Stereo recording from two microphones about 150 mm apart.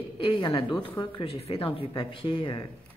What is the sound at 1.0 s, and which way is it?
Speech, 35° left (ahead or behind).